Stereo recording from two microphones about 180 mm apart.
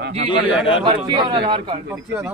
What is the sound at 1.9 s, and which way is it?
Speech, 10° right (ahead or behind).